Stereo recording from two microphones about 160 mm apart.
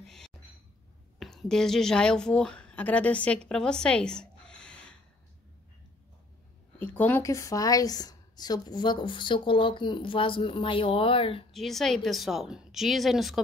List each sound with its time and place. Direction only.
1.2 s a woman's voice: 5° left (ahead or behind)
6.8 s a woman's voice: 10° left (ahead or behind); by 11.4 s 35° left (ahead or behind)
11.5 s speech: centre (ahead or behind)